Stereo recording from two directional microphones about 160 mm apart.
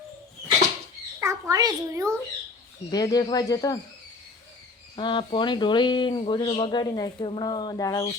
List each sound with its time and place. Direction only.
1.2 s a child's voice: 20° right (ahead or behind)
2.9 s speech: 25° left (ahead or behind)
4.9 s speech: 30° left (ahead or behind)